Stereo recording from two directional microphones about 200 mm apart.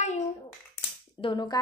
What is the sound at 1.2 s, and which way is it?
Speech, 20° left (ahead or behind).